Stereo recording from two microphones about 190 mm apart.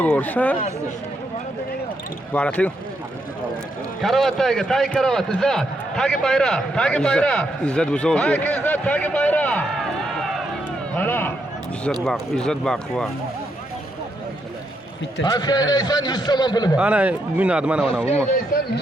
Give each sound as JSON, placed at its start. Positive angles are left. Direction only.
{"t": 0.0, "sound": "speech", "side_deg": 10}
{"t": 2.3, "sound": "speech", "side_deg": 5}
{"t": 4.0, "sound": "a man's voice", "side_deg": 0}
{"t": 12.0, "sound": "a man's voice", "side_deg": 0}
{"t": 15.2, "sound": "a man's voice", "side_deg": 20}
{"t": 16.7, "sound": "a man's voice", "side_deg": -5}